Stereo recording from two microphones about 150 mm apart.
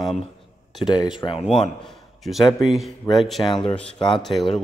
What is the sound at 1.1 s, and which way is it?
Speech, 35° left (ahead or behind).